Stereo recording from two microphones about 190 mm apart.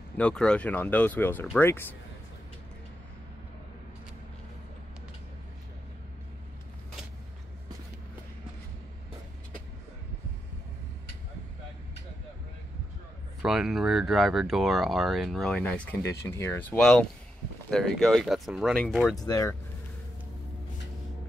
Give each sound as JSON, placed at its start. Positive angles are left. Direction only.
{"t": 0.2, "sound": "speech", "side_deg": 5}
{"t": 13.4, "sound": "speech", "side_deg": 0}
{"t": 19.0, "sound": "speech", "side_deg": 20}